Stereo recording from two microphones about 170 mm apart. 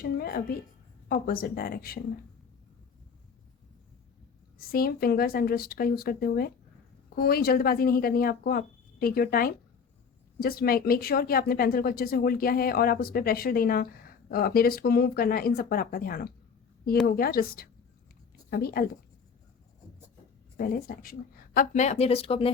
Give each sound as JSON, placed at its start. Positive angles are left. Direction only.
{"t": 0.0, "sound": "speech", "side_deg": 60}
{"t": 4.5, "sound": "speech", "side_deg": 60}
{"t": 20.6, "sound": "speech", "side_deg": 55}